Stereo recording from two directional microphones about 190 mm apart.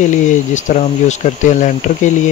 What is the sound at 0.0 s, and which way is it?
Speech, 40° left (ahead or behind).